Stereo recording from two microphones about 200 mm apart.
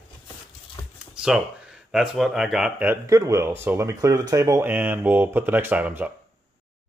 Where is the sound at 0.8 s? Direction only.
25° left (ahead or behind).